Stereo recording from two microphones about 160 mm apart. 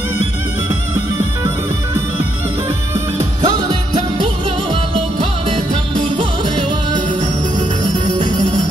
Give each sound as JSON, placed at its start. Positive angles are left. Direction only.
{"t": 3.4, "sound": "music", "side_deg": -30}
{"t": 4.9, "sound": "music", "side_deg": -35}